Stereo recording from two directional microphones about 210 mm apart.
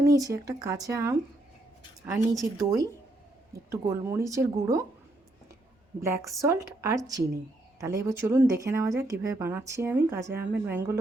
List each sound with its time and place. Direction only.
0.0 s a woman's voice: 15° right (ahead or behind)
6.0 s a woman's voice: 15° right (ahead or behind)